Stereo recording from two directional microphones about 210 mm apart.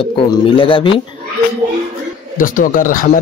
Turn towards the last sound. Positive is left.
turn(degrees=40)  # may be behind; listen again after turning